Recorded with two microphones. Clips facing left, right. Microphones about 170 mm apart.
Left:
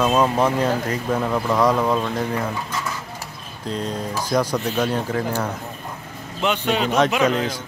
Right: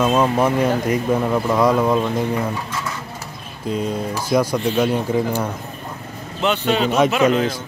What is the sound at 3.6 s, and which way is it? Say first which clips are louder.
Speech: right 4 dB; 5° right (ahead or behind).